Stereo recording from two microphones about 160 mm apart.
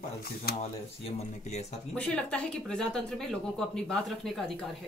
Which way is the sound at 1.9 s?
5° left (ahead or behind).